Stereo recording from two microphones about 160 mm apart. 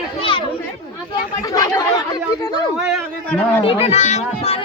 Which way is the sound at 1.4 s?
25° left (ahead or behind).